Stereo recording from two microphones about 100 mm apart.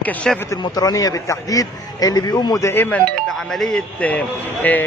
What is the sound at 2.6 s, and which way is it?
Speech, 20° left (ahead or behind).